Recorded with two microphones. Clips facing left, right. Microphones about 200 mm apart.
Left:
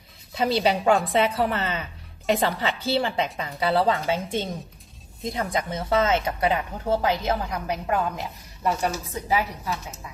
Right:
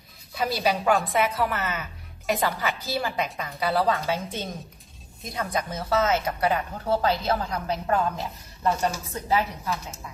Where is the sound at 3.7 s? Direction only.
20° left (ahead or behind).